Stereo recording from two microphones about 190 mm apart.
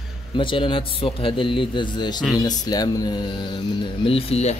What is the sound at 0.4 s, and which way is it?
Speech, 25° left (ahead or behind).